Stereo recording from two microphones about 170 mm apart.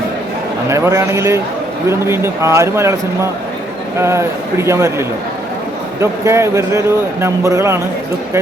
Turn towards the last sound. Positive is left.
turn(degrees=-15)  # may be behind; listen again after turning